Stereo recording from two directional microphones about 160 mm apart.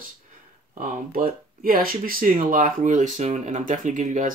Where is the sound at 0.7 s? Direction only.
65° right (ahead or behind).